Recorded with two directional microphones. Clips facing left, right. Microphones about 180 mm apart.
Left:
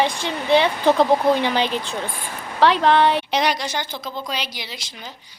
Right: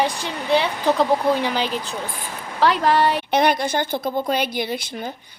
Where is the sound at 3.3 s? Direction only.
55° right (ahead or behind).